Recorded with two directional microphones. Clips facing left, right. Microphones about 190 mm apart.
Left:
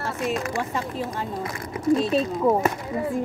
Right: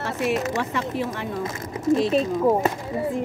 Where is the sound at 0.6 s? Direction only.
75° right (ahead or behind).